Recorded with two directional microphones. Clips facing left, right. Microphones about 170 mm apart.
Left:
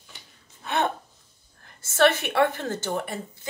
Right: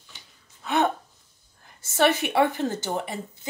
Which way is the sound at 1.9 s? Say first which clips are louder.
Left 1 dB; 15° right (ahead or behind).